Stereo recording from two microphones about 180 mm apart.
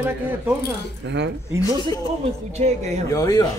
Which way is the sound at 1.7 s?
20° left (ahead or behind).